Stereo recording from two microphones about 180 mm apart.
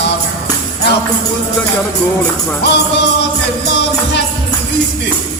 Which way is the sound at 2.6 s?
70° left (ahead or behind).